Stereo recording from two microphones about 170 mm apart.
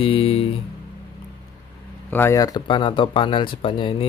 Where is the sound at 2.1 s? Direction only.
15° left (ahead or behind).